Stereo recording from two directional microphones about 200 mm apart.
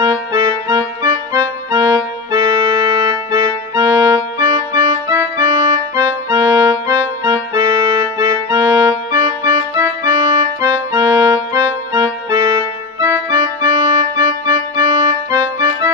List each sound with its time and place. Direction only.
0.0 s accordion: 25° right (ahead or behind)
8.2 s music: 20° right (ahead or behind)
13.0 s organ: 20° right (ahead or behind)